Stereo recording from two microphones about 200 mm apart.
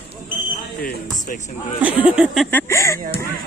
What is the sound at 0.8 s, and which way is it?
Basketball bounce, 45° left (ahead or behind).